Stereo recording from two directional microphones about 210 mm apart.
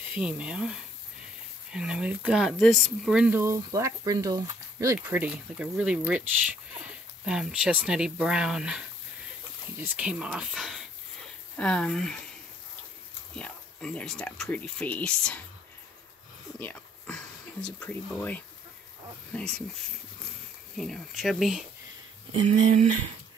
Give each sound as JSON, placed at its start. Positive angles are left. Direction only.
{"t": 0.1, "sound": "speech", "side_deg": -5}
{"t": 13.4, "sound": "speech", "side_deg": 5}
{"t": 16.5, "sound": "a sound", "side_deg": 5}
{"t": 19.3, "sound": "speech", "side_deg": 5}
{"t": 20.7, "sound": "speech", "side_deg": 0}
{"t": 22.7, "sound": "speech", "side_deg": -35}